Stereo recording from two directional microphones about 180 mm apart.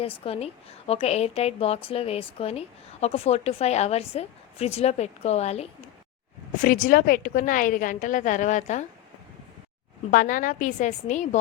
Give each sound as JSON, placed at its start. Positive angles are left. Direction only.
{"t": 0.0, "sound": "a woman's voice", "side_deg": 30}
{"t": 6.6, "sound": "a woman's voice", "side_deg": 45}
{"t": 10.1, "sound": "a woman's voice", "side_deg": 50}